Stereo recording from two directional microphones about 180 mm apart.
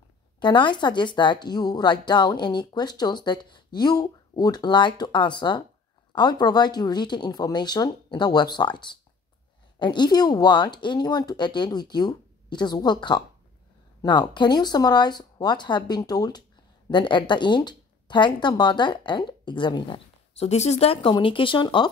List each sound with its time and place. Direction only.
0.4 s speech: 25° left (ahead or behind)